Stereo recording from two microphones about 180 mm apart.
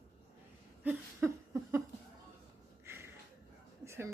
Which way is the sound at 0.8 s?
15° right (ahead or behind).